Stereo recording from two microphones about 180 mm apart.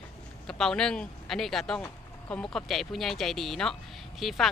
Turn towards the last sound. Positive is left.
turn(degrees=0)  # may be behind; listen again after turning